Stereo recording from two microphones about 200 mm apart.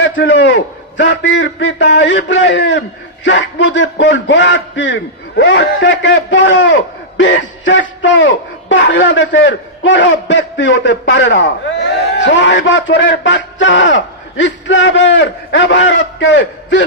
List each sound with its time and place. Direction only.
0.0 s a man's voice: 70° left (ahead or behind)